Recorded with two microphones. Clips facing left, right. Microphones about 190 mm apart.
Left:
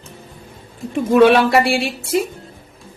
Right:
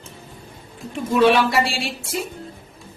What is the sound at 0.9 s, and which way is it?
A man's voice, 60° left (ahead or behind).